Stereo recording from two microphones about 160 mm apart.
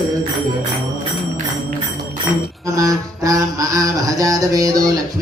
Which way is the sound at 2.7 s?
20° right (ahead or behind).